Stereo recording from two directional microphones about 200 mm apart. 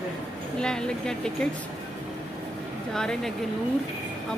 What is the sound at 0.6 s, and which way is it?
Speech, 5° left (ahead or behind).